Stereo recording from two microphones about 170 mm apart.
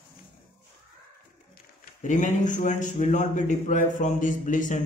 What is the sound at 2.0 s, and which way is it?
A man's voice, 45° left (ahead or behind).